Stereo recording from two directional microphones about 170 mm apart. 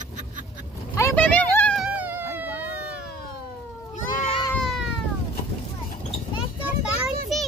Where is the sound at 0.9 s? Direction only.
15° left (ahead or behind).